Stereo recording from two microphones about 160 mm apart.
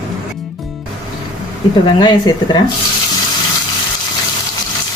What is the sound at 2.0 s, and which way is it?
Speech, 25° left (ahead or behind).